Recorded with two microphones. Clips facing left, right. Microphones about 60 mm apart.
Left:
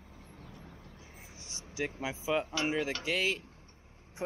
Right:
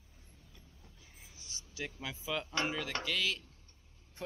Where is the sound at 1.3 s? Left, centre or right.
Left.